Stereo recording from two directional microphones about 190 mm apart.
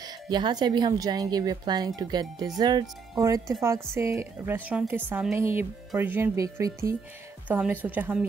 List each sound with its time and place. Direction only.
0.0 s speech: 25° right (ahead or behind)